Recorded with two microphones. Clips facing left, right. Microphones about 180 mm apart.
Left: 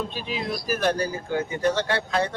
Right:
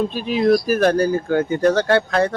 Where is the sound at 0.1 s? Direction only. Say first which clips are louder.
Right 13 dB; 50° right (ahead or behind).